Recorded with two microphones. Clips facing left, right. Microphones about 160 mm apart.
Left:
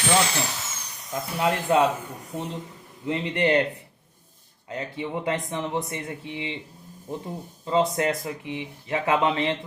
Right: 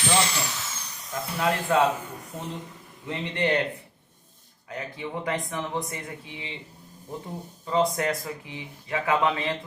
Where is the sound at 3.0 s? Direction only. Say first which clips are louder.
Left 3 dB; 25° left (ahead or behind).